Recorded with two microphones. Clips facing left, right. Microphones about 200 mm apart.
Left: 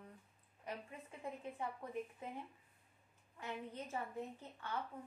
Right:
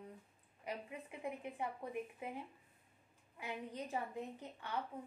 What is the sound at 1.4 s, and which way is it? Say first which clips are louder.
Speech: right 2 dB; 15° right (ahead or behind).